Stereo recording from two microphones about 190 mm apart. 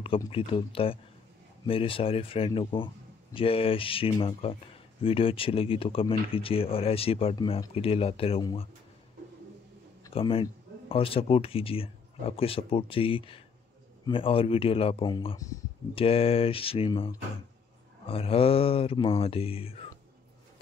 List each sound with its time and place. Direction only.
0.3 s speech: 30° left (ahead or behind)
10.1 s speech: 25° left (ahead or behind)
15.9 s speech: 30° left (ahead or behind)